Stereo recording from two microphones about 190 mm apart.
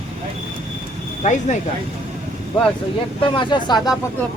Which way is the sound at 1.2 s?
40° left (ahead or behind).